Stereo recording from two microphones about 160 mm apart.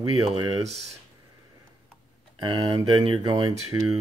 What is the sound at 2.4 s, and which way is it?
Speech, 30° right (ahead or behind).